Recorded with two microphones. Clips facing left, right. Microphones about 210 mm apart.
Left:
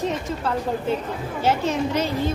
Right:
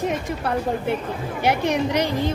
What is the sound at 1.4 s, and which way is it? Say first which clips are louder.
Speech: right 1 dB; 15° right (ahead or behind).